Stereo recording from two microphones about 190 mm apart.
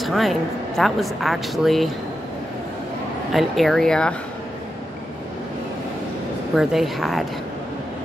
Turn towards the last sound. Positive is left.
turn(degrees=0)  # may be behind; listen again after turning